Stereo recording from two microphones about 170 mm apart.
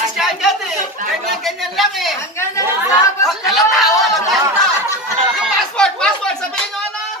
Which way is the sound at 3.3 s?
Centre (ahead or behind).